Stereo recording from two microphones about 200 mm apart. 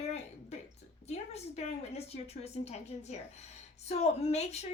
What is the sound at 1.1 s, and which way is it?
A woman's voice, 30° left (ahead or behind).